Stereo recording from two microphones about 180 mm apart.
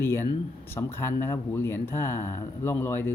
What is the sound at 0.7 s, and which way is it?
Speech, 15° left (ahead or behind).